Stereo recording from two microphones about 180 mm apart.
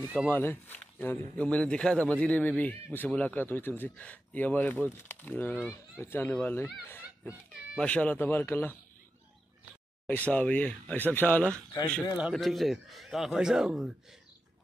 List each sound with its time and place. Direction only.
0.3 s speech: 10° left (ahead or behind)
7.8 s speech: 10° left (ahead or behind)
10.0 s speech: 10° left (ahead or behind)
12.2 s speech: centre (ahead or behind)